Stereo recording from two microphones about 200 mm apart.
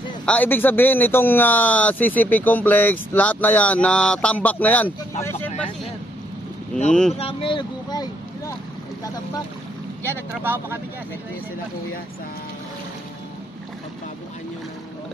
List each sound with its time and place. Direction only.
0.2 s speech: 5° left (ahead or behind)
6.9 s speech: 5° left (ahead or behind)
7.2 s speech: 25° left (ahead or behind)
10.0 s speech: 10° right (ahead or behind)